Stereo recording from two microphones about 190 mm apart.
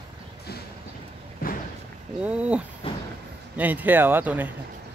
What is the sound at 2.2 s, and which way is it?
Speech, 5° right (ahead or behind).